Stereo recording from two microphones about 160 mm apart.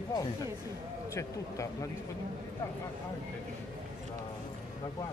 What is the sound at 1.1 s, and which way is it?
Speech, 20° left (ahead or behind).